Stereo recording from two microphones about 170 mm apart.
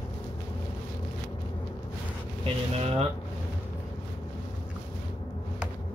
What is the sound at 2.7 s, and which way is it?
Speech, 40° right (ahead or behind).